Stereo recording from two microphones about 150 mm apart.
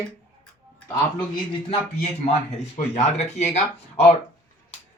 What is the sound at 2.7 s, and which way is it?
Speech, 50° left (ahead or behind).